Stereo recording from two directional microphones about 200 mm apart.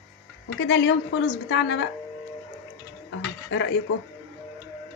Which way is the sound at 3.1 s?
70° left (ahead or behind).